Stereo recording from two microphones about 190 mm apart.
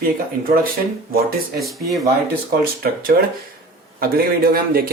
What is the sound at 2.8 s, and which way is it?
Speech, 50° right (ahead or behind).